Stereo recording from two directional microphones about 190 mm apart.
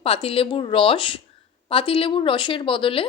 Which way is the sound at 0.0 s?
30° left (ahead or behind).